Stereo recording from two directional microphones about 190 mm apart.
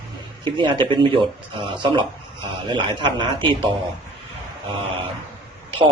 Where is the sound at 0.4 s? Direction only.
25° right (ahead or behind).